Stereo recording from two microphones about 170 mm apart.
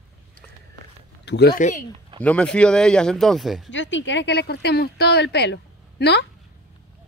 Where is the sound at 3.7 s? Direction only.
90° left.